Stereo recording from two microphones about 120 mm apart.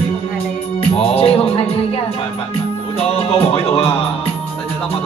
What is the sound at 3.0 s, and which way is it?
Speech, 50° left (ahead or behind).